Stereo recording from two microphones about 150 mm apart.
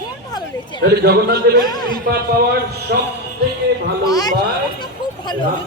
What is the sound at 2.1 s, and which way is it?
Speech, 90° right.